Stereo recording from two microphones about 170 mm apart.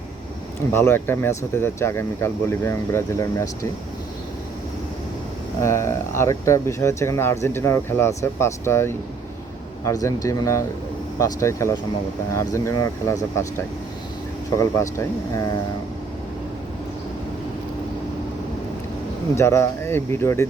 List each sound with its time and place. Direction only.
0.7 s speech: 15° left (ahead or behind)
5.6 s speech: 15° left (ahead or behind)
14.6 s speech: 15° left (ahead or behind)
19.4 s speech: 15° left (ahead or behind)